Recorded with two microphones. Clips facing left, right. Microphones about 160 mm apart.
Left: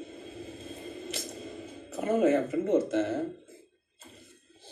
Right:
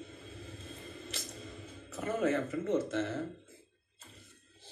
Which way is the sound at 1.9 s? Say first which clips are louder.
Left 7 dB; 20° left (ahead or behind).